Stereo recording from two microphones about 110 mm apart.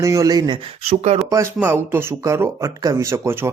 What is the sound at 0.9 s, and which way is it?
Speech, 75° right (ahead or behind).